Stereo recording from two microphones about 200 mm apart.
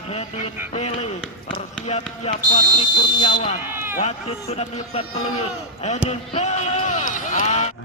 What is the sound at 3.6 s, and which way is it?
Run, 10° right (ahead or behind).